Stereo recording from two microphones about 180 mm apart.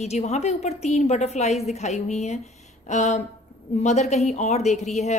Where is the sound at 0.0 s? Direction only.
35° left (ahead or behind).